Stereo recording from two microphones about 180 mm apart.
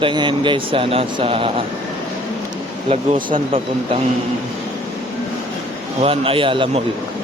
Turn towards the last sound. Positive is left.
turn(degrees=-30)  # may be behind; listen again after turning